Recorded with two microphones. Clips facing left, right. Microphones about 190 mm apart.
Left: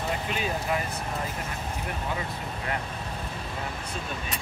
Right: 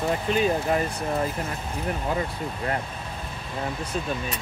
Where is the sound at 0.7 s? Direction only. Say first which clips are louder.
Right 5 dB; 40° right (ahead or behind).